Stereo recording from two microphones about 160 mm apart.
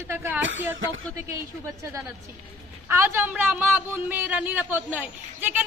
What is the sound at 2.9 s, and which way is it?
Speech, 15° right (ahead or behind).